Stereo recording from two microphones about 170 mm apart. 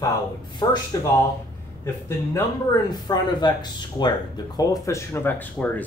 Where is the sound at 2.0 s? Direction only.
20° left (ahead or behind).